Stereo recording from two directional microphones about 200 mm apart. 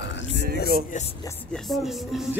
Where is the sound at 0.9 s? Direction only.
40° left (ahead or behind).